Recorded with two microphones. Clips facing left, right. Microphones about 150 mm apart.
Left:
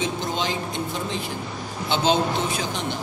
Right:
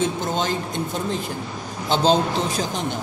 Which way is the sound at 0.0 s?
45° right (ahead or behind).